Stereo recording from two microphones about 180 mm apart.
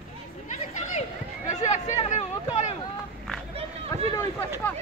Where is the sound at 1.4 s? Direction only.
40° left (ahead or behind).